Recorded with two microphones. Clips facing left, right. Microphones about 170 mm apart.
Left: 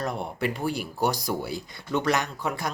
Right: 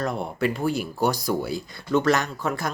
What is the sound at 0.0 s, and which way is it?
Speech, 20° left (ahead or behind).